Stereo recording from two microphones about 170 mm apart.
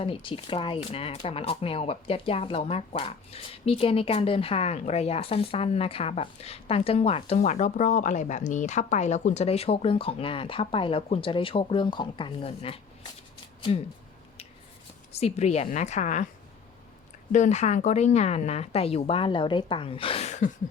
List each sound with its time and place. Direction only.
0.0 s speech: 30° left (ahead or behind)
15.1 s speech: 40° left (ahead or behind)
17.3 s speech: 45° left (ahead or behind)